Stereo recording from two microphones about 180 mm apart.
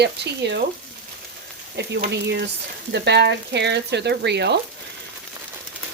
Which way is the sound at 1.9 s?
70° right (ahead or behind).